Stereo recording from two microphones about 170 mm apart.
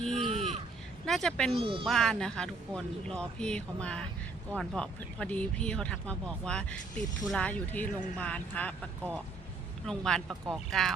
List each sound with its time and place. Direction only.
0.0 s a sound: 5° left (ahead or behind)
0.3 s a sound: 35° right (ahead or behind)
1.0 s speech: centre (ahead or behind)
1.5 s speech: 30° right (ahead or behind)
1.9 s speech: centre (ahead or behind)
9.8 s speech: 5° left (ahead or behind)